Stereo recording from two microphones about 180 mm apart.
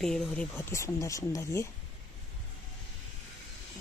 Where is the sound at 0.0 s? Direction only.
5° left (ahead or behind).